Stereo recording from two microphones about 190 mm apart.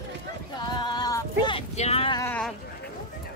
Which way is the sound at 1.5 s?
35° left (ahead or behind).